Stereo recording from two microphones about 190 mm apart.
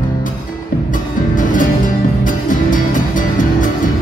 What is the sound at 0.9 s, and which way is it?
Music, 45° left (ahead or behind).